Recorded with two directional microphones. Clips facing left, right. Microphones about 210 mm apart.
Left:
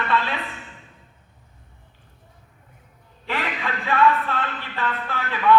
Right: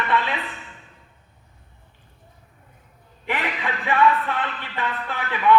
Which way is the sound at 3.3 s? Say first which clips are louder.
Right 1 dB; 15° right (ahead or behind).